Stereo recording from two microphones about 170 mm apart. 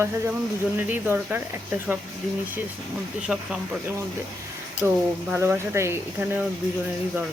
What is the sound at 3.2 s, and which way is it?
Speech, 5° right (ahead or behind).